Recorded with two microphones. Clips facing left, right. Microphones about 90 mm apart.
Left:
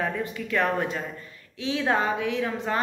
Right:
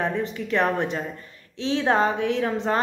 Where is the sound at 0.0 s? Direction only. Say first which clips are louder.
Right 3 dB; 25° right (ahead or behind).